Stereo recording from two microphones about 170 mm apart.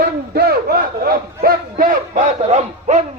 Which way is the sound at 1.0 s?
60° right (ahead or behind).